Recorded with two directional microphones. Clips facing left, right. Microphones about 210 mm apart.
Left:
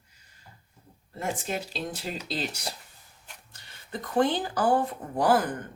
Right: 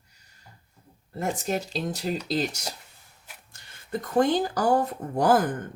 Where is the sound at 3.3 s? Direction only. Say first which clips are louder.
Even; 5° right (ahead or behind).